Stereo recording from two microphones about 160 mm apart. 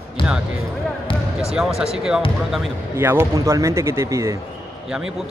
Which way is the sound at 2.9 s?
15° right (ahead or behind).